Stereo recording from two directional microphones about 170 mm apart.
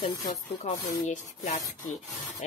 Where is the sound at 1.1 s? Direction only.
45° left (ahead or behind).